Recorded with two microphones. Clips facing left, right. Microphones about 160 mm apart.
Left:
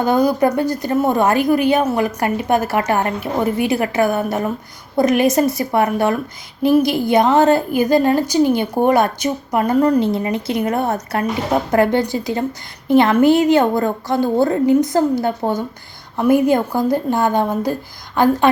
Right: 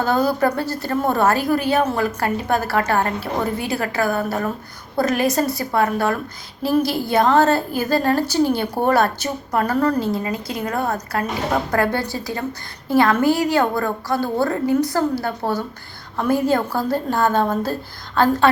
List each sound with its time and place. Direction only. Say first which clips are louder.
0.0 s a woman's voice: left 3 dB; 15° left (ahead or behind)